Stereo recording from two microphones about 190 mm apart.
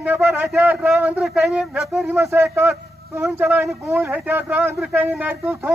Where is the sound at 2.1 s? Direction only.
15° right (ahead or behind).